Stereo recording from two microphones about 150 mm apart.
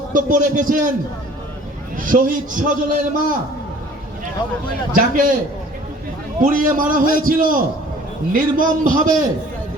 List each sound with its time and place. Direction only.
0.1 s a man's voice: 60° right (ahead or behind)
2.0 s a man's voice: 65° right (ahead or behind)
4.9 s a man's voice: 65° right (ahead or behind)
6.4 s a man's voice: 65° right (ahead or behind)